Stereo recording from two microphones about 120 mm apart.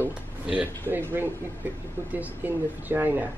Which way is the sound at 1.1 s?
15° right (ahead or behind).